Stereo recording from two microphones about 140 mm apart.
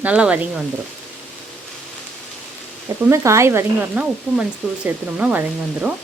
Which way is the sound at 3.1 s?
20° right (ahead or behind).